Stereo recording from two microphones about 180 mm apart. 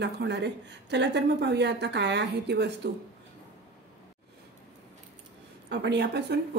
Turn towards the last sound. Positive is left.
turn(degrees=-70)  # may be behind; listen again after turning